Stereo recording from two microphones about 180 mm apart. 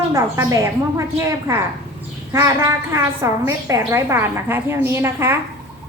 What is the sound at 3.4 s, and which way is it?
A woman's voice, 15° right (ahead or behind).